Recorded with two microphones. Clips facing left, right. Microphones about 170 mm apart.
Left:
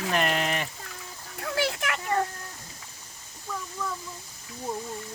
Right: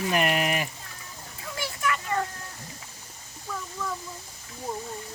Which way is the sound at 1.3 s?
80° left.